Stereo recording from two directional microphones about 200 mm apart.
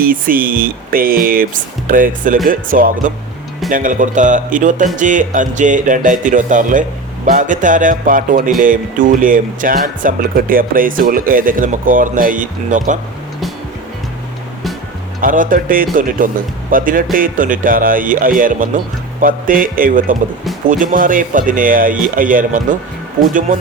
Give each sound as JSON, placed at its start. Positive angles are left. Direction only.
{"t": 0.0, "sound": "speech", "side_deg": -45}
{"t": 15.2, "sound": "speech", "side_deg": -45}